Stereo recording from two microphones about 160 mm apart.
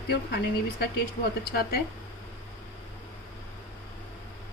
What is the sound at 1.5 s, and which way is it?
Speech, 75° left (ahead or behind).